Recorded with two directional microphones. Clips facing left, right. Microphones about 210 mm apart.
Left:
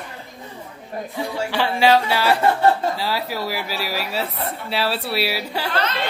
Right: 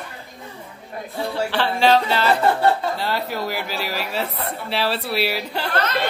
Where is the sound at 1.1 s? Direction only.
15° left (ahead or behind).